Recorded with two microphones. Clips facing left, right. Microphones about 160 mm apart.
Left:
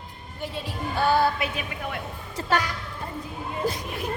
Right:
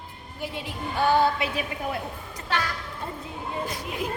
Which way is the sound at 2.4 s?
40° left (ahead or behind).